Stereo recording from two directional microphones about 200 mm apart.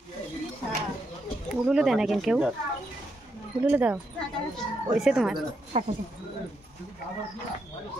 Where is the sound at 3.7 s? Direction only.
10° right (ahead or behind).